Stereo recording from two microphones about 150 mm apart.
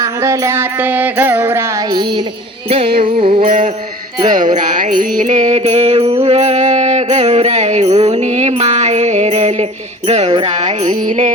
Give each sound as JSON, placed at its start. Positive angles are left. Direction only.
{"t": 0.0, "sound": "mantra", "side_deg": -20}
{"t": 1.9, "sound": "music", "side_deg": -30}
{"t": 4.3, "sound": "music", "side_deg": -60}
{"t": 10.1, "sound": "a sound", "side_deg": -45}
{"t": 10.6, "sound": "music", "side_deg": -30}